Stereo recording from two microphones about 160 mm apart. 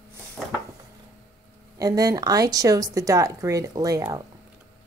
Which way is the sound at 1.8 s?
20° right (ahead or behind).